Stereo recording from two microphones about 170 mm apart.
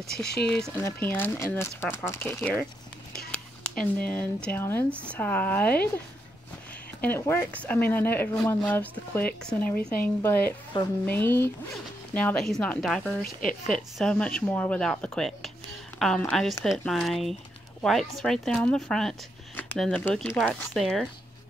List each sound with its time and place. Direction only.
0.7 s speech: 15° left (ahead or behind)
7.0 s speech: 15° left (ahead or behind)
10.7 s speech: 30° left (ahead or behind)
11.1 s speech: 10° left (ahead or behind)